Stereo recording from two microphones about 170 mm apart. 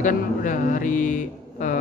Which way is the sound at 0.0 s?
50° left (ahead or behind).